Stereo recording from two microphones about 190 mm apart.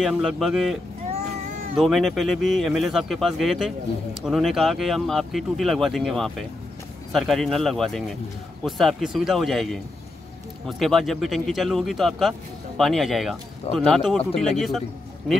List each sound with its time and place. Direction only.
0.0 s speech: centre (ahead or behind)
1.8 s speech: centre (ahead or behind)